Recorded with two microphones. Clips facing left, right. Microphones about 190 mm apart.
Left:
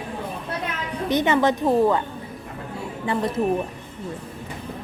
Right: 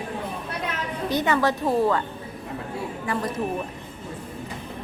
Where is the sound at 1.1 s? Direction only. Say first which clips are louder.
Left 3 dB; 20° left (ahead or behind).